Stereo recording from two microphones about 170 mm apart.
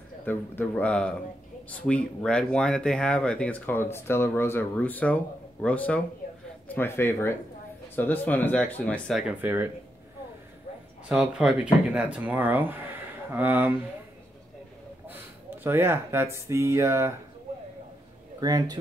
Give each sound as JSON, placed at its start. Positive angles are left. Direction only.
{"t": 0.2, "sound": "speech", "side_deg": 10}
{"t": 9.4, "sound": "speech", "side_deg": -10}
{"t": 11.1, "sound": "speech", "side_deg": -5}
{"t": 15.6, "sound": "speech", "side_deg": -15}
{"t": 18.4, "sound": "a man's voice", "side_deg": -20}